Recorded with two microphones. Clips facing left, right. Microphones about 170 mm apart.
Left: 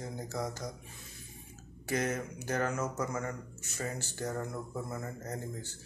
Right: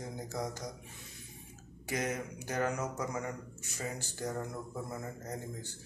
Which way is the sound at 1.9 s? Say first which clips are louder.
Left 2 dB; 15° right (ahead or behind).